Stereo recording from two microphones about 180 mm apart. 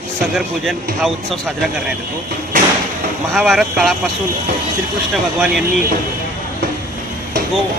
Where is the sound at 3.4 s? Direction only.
Centre (ahead or behind).